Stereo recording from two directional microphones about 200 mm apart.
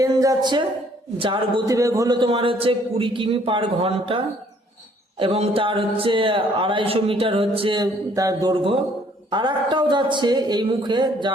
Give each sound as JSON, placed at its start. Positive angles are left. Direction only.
{"t": 0.0, "sound": "a woman's voice", "side_deg": -15}